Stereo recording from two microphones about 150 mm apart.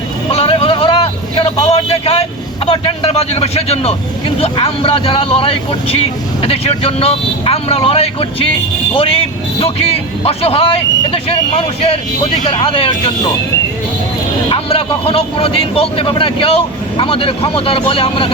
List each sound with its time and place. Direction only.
0.3 s vehicle: 40° left (ahead or behind)
2.6 s a man's voice: 40° left (ahead or behind)
14.5 s a man's voice: 40° left (ahead or behind)